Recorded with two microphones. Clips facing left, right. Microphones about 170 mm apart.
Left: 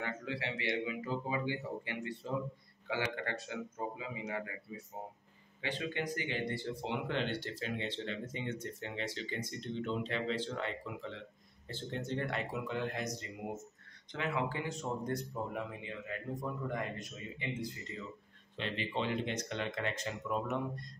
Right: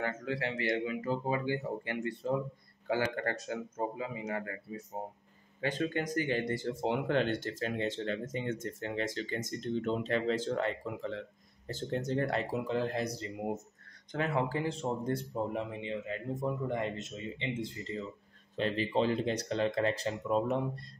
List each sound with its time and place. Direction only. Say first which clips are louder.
0.0 s speech: right 5 dB; 45° right (ahead or behind); by 18.0 s 25° right (ahead or behind)
18.6 s speech: right 7 dB; 40° right (ahead or behind)